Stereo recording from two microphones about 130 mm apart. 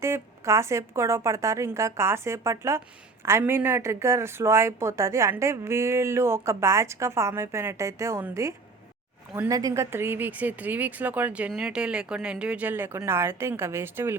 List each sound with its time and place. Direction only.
0.0 s a woman's voice: 20° right (ahead or behind)